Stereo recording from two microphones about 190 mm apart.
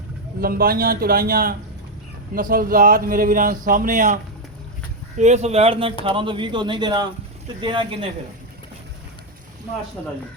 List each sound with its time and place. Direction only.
0.4 s speech: 50° right (ahead or behind); by 8.1 s 25° right (ahead or behind)